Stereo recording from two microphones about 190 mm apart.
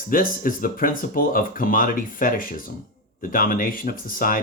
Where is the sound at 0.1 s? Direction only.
45° left (ahead or behind).